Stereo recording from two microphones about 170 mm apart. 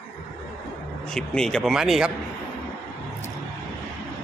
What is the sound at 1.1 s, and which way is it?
Speech, 5° left (ahead or behind).